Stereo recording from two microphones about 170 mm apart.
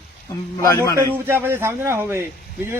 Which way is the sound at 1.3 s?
15° right (ahead or behind).